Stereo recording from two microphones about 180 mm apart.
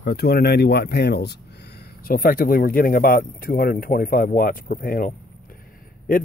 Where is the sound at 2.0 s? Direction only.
55° left (ahead or behind).